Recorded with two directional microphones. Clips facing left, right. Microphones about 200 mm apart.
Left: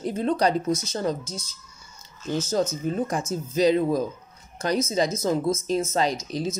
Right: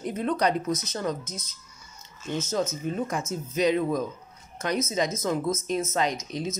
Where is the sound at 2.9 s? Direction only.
35° left (ahead or behind).